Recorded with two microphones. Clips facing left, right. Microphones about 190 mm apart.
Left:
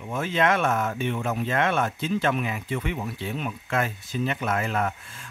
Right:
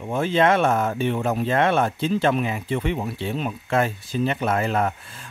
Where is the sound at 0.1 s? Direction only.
30° right (ahead or behind).